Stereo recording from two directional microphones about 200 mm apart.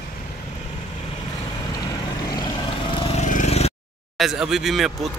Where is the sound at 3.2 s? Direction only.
35° left (ahead or behind).